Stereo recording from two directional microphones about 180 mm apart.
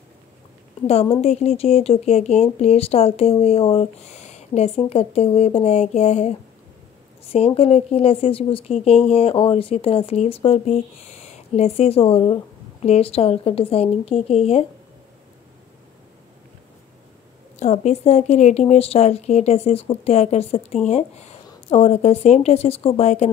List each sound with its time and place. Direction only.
0.8 s speech: 35° left (ahead or behind)
17.6 s speech: 40° left (ahead or behind)